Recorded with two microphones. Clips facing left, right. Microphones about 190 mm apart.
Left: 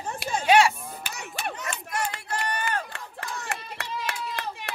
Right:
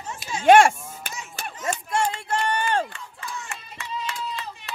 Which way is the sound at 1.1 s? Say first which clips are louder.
Left 5 dB; 65° left (ahead or behind).